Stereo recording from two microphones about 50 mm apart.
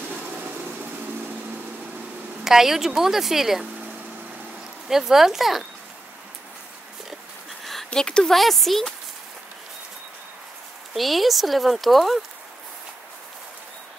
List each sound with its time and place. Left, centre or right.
2.4 s speech: centre
4.8 s speech: centre
7.9 s speech: centre
8.4 s speech: centre
11.0 s speech: centre